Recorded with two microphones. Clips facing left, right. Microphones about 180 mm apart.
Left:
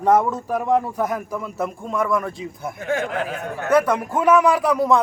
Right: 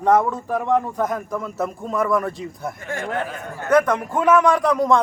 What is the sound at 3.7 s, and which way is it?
Speech, 10° left (ahead or behind).